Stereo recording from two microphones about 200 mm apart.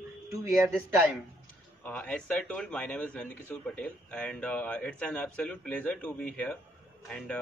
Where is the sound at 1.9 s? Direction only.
5° left (ahead or behind).